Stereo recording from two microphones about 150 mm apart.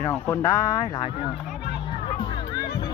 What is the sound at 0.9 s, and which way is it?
Speech, 30° left (ahead or behind).